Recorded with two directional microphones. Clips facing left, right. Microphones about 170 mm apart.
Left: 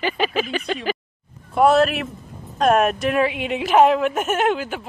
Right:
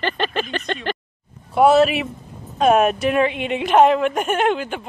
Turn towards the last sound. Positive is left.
turn(degrees=5)  # may be behind; listen again after turning